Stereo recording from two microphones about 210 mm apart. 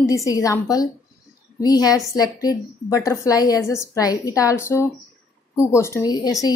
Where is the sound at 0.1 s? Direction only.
15° left (ahead or behind).